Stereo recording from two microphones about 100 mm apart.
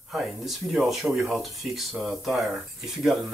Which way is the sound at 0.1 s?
Centre (ahead or behind).